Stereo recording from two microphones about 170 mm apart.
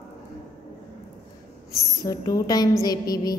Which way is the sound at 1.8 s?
20° left (ahead or behind).